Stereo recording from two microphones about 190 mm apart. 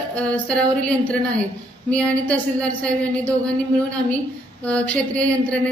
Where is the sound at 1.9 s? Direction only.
5° left (ahead or behind).